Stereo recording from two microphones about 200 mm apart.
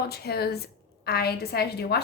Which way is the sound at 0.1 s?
50° left (ahead or behind).